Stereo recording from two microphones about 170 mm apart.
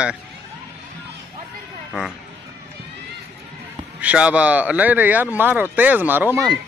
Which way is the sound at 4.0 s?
5° right (ahead or behind).